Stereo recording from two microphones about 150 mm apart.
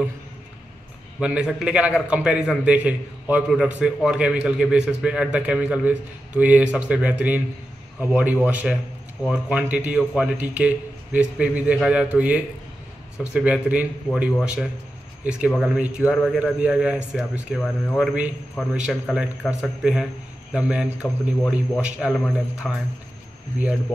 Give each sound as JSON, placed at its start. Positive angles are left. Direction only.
{"t": 1.2, "sound": "a man's voice", "side_deg": -5}